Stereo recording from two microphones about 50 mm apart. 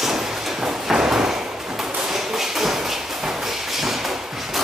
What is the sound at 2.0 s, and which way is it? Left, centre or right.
Tap, centre.